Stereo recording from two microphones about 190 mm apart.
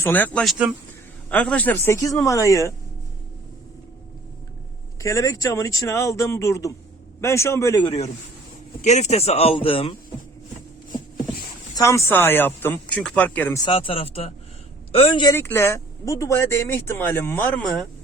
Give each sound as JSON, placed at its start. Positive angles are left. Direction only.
{"t": 0.0, "sound": "speech", "side_deg": 10}
{"t": 4.9, "sound": "speech", "side_deg": 15}
{"t": 8.8, "sound": "speech", "side_deg": 35}
{"t": 11.7, "sound": "speech", "side_deg": 15}
{"t": 13.7, "sound": "speech", "side_deg": 30}
{"t": 15.4, "sound": "speech", "side_deg": 10}